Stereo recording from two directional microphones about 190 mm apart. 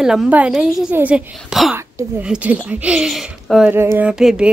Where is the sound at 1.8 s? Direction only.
10° right (ahead or behind).